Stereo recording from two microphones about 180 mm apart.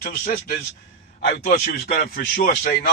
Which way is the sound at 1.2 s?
55° left (ahead or behind).